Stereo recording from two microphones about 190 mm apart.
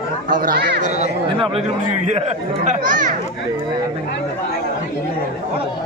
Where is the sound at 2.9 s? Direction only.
40° right (ahead or behind).